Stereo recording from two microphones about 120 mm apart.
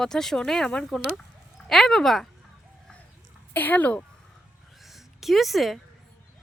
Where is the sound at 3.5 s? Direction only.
15° left (ahead or behind).